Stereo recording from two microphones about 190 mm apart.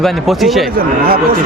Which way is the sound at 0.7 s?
50° right (ahead or behind).